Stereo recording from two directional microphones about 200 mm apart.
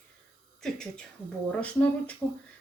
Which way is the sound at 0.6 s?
5° left (ahead or behind).